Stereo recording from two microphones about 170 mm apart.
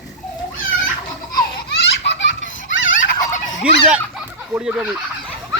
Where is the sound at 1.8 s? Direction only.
90° left.